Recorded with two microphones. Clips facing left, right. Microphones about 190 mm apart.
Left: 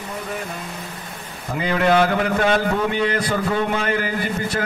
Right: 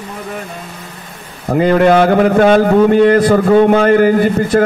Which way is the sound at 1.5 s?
50° right (ahead or behind).